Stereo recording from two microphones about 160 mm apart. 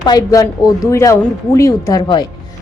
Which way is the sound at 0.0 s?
25° left (ahead or behind).